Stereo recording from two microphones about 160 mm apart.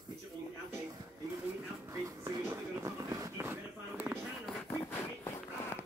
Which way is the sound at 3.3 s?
10° right (ahead or behind).